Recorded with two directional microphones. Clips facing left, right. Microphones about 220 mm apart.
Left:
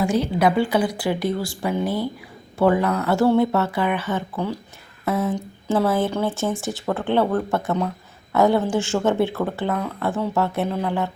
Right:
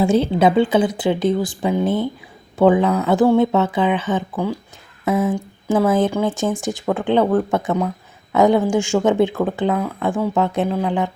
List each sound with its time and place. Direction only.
0.0 s speech: 25° right (ahead or behind)